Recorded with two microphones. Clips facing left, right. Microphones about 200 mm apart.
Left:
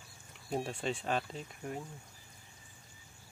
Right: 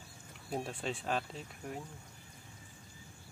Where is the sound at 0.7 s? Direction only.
Centre (ahead or behind).